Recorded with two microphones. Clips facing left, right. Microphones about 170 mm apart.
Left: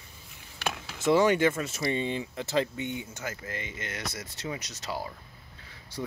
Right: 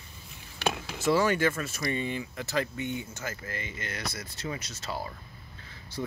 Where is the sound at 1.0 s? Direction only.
20° left (ahead or behind).